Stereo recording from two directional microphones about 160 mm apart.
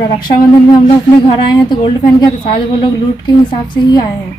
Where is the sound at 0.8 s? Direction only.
30° left (ahead or behind).